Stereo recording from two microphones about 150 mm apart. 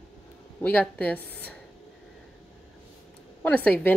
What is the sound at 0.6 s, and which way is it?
Speech, 10° left (ahead or behind).